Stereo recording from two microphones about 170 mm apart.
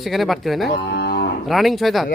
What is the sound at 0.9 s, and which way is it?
Cattle, 75° left (ahead or behind).